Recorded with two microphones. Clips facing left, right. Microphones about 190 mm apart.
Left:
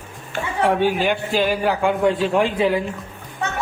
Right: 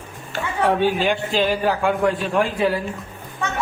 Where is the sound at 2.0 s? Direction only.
25° left (ahead or behind).